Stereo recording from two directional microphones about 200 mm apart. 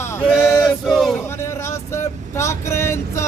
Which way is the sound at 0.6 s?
Centre (ahead or behind).